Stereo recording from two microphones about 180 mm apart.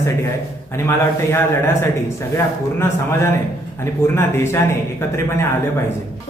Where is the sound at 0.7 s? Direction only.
15° left (ahead or behind).